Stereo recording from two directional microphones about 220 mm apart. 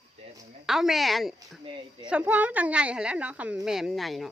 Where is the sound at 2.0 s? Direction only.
5° right (ahead or behind).